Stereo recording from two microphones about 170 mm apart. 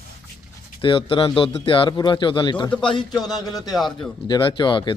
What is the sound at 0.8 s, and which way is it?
Speech, 30° left (ahead or behind).